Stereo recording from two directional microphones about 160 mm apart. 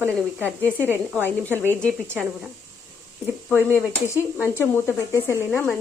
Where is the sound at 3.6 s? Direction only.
15° left (ahead or behind).